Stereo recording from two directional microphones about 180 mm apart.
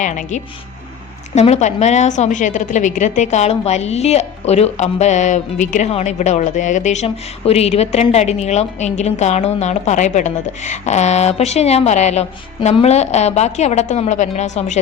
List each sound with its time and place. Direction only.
0.0 s a woman's voice: 45° left (ahead or behind)